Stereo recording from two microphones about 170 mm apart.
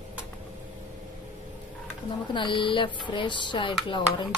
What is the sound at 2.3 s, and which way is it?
Speech, 30° left (ahead or behind).